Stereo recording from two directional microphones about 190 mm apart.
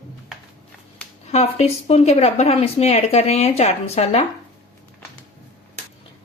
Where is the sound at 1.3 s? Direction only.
35° left (ahead or behind).